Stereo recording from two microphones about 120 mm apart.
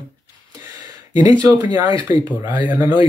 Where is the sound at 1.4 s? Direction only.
30° right (ahead or behind).